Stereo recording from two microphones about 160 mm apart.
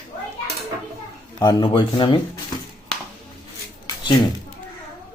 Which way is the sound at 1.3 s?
25° left (ahead or behind).